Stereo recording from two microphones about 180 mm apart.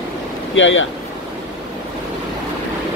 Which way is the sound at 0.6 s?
90° left.